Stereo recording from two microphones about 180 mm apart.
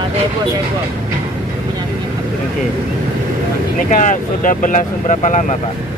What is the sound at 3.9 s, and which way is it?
Speech, 45° left (ahead or behind).